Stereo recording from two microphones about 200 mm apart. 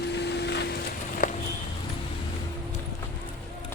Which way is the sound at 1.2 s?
45° left (ahead or behind).